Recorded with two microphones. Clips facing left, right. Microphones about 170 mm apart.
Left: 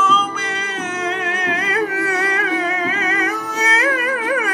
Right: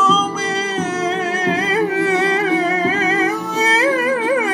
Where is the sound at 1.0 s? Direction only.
35° right (ahead or behind).